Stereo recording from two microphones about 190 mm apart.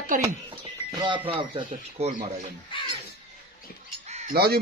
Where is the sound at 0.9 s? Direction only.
25° right (ahead or behind).